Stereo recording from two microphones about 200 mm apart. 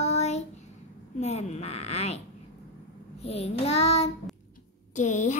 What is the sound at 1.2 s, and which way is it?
Speech, 35° left (ahead or behind).